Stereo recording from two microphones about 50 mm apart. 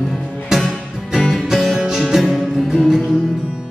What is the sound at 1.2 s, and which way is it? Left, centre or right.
Music, centre.